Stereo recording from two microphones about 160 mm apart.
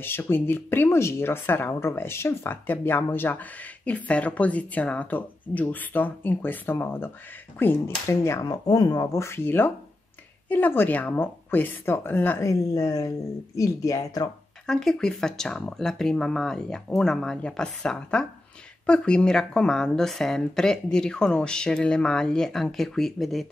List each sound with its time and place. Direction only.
0.0 s speech: 15° left (ahead or behind)
14.7 s speech: 5° left (ahead or behind)